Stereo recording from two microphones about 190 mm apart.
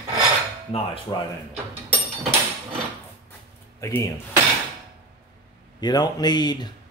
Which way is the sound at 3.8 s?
15° left (ahead or behind).